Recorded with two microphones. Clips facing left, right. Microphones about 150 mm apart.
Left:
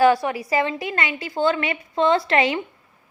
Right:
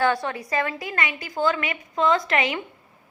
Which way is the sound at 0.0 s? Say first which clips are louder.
Left 6 dB; 20° left (ahead or behind).